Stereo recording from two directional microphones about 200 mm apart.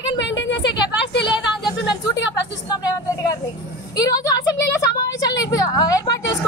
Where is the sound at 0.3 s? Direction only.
65° left (ahead or behind).